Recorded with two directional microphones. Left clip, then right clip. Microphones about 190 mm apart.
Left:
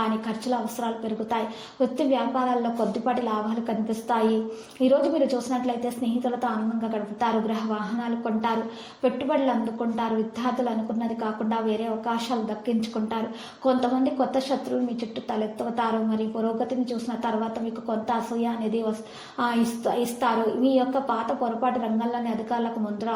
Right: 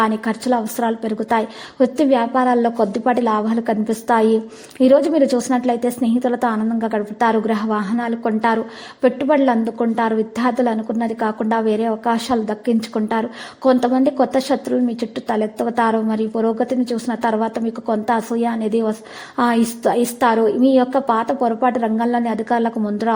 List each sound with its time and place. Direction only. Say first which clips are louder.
0.3 s a woman's voice: right 8 dB; 45° right (ahead or behind)